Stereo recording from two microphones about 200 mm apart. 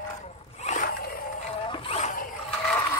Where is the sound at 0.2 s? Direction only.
35° left (ahead or behind).